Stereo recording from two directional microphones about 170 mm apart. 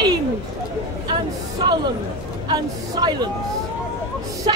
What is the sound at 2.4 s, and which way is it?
Speech, 25° right (ahead or behind).